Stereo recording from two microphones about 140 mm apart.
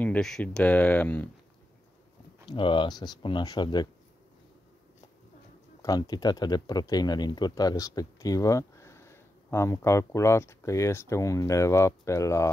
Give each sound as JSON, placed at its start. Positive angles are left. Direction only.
{"t": 0.0, "sound": "speech", "side_deg": 5}
{"t": 2.4, "sound": "speech", "side_deg": 35}
{"t": 5.8, "sound": "speech", "side_deg": 25}